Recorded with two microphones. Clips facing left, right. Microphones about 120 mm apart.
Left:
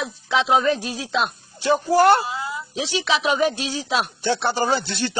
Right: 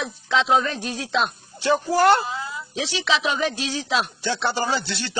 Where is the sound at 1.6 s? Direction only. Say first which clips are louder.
Left 2 dB; 30° left (ahead or behind).